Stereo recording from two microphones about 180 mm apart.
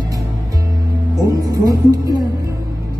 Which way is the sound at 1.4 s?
20° right (ahead or behind).